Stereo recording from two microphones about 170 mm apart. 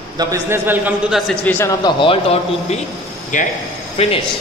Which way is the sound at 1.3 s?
10° left (ahead or behind).